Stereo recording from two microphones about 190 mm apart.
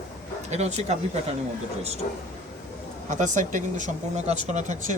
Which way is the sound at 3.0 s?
40° right (ahead or behind).